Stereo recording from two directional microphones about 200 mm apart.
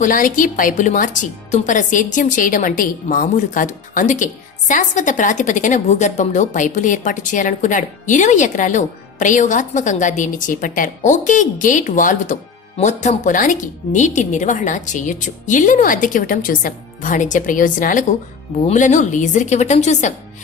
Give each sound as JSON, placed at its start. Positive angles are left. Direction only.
{"t": 0.0, "sound": "a woman's voice", "side_deg": 40}